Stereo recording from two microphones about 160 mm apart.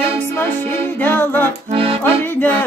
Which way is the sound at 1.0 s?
10° left (ahead or behind).